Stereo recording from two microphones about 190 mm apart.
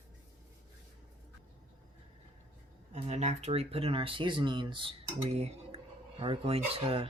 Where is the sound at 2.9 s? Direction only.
35° right (ahead or behind).